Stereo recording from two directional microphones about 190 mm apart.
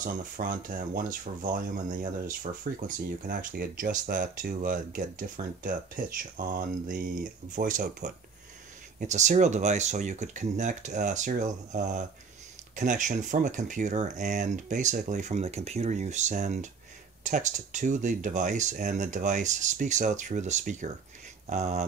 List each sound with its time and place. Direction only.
0.0 s speech: 45° right (ahead or behind)
9.0 s speech: 40° right (ahead or behind)